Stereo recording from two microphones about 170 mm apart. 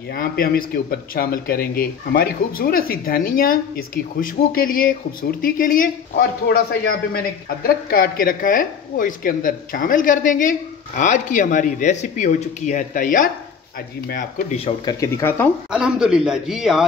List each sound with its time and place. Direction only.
0.1 s a man's voice: 60° left (ahead or behind)
14.6 s speech: 20° left (ahead or behind)
15.7 s a man's voice: 5° right (ahead or behind)